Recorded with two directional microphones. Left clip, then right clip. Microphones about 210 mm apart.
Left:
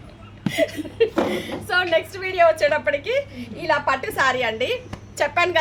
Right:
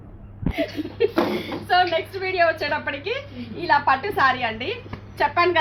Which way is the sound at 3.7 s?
35° left (ahead or behind).